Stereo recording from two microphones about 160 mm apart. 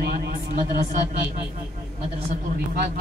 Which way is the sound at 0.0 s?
75° right (ahead or behind).